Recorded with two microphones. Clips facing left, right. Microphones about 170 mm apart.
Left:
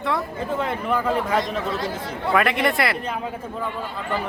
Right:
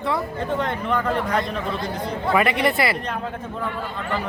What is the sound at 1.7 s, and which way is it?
Speech, 90° left.